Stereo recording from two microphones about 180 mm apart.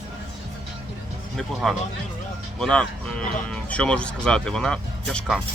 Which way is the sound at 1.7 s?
Centre (ahead or behind).